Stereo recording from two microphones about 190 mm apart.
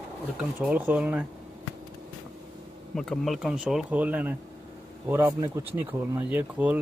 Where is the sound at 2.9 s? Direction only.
Centre (ahead or behind).